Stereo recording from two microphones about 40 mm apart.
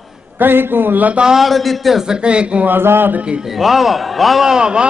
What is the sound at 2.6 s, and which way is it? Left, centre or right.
Speech, right.